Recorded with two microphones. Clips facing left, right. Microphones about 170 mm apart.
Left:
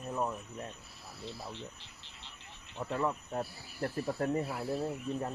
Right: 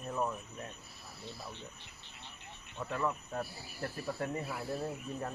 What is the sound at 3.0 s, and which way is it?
Cricket, 20° left (ahead or behind).